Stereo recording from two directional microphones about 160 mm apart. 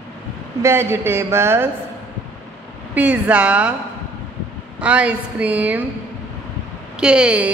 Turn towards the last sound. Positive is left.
turn(degrees=-5)  # may be behind; listen again after turning